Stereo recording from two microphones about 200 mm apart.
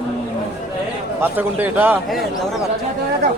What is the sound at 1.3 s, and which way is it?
Speech, 10° right (ahead or behind).